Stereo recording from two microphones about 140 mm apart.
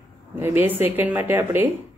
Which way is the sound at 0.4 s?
15° right (ahead or behind).